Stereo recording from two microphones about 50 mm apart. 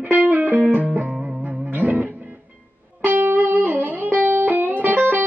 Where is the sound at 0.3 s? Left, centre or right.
Right.